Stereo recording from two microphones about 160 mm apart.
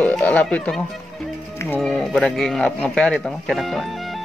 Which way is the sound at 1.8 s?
5° left (ahead or behind).